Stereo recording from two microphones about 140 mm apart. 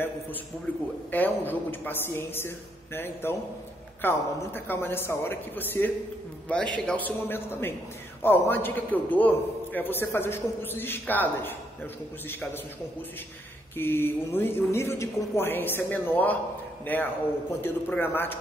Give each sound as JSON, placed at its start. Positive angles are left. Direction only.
{"t": 1.1, "sound": "a man's voice", "side_deg": 15}
{"t": 13.7, "sound": "a man's voice", "side_deg": 15}